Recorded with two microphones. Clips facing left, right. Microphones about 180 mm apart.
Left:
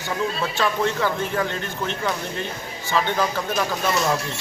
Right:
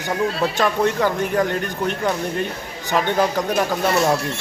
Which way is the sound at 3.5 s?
60° right (ahead or behind).